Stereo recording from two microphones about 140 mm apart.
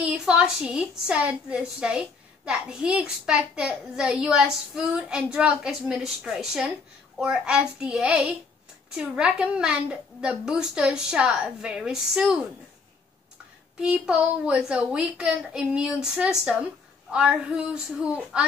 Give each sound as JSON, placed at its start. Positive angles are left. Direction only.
{"t": 0.0, "sound": "a woman's voice", "side_deg": -5}
{"t": 13.7, "sound": "a woman's voice", "side_deg": -5}